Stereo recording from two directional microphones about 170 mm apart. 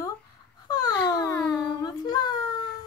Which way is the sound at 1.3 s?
5° left (ahead or behind).